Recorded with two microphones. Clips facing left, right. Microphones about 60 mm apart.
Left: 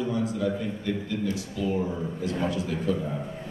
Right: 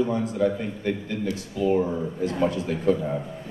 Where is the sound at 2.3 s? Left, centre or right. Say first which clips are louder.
Right 3 dB; right.